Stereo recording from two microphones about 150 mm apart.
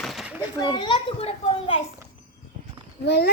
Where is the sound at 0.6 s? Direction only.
30° left (ahead or behind).